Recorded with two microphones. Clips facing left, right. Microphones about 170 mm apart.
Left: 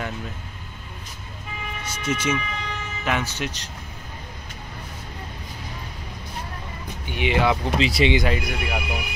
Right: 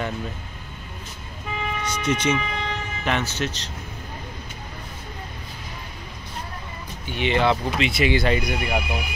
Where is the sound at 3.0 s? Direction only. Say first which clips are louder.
Right 1 dB; 10° left (ahead or behind).